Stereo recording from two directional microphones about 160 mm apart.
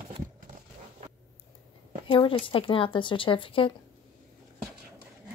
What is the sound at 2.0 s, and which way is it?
Speech, 30° left (ahead or behind).